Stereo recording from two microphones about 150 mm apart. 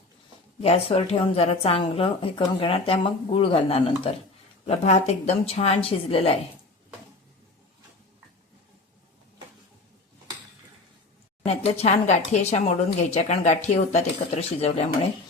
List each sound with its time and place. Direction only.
0.6 s a woman's voice: 40° left (ahead or behind)
11.4 s speech: 40° left (ahead or behind)